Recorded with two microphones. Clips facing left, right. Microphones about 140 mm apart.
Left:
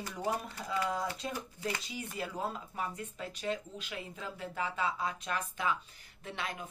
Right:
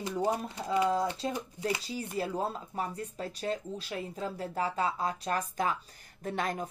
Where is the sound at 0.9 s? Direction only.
30° right (ahead or behind).